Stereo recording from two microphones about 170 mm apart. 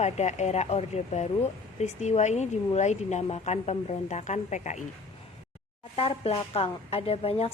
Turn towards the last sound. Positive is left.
turn(degrees=35)  # may be behind; listen again after turning